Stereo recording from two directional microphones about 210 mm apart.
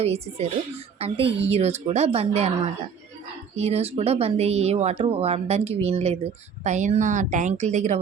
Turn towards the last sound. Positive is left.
turn(degrees=-35)  # may be behind; listen again after turning